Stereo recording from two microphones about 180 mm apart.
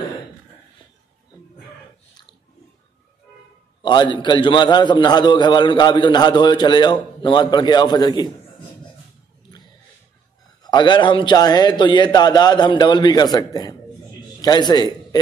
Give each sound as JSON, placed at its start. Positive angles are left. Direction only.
{"t": 3.8, "sound": "a man's voice", "side_deg": 25}
{"t": 10.6, "sound": "a man's voice", "side_deg": 25}